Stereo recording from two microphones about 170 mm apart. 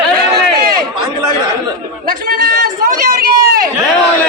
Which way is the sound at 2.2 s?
60° right (ahead or behind).